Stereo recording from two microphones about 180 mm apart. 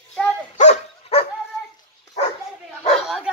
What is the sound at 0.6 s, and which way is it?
Dog, 40° left (ahead or behind).